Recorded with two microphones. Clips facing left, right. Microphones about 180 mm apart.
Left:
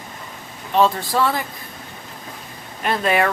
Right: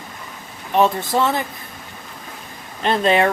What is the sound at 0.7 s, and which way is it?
Speech, 20° right (ahead or behind).